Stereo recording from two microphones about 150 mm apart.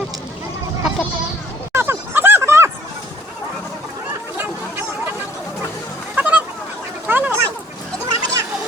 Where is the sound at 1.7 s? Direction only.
15° right (ahead or behind).